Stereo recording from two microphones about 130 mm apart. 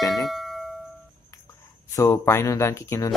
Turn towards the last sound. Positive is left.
turn(degrees=25)  # may be behind; listen again after turning